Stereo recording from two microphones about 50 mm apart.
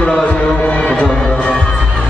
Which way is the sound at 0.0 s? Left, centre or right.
Left.